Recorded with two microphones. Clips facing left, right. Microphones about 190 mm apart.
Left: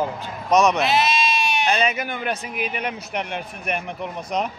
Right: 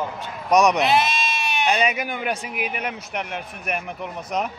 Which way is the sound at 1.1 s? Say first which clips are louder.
Left 5 dB; 50° right (ahead or behind).